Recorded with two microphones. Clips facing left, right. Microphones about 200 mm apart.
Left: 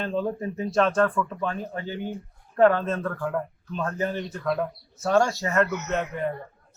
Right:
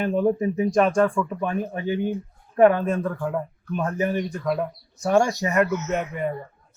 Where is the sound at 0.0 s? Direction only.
15° right (ahead or behind).